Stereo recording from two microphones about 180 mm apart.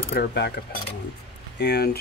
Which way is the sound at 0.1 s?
65° left (ahead or behind).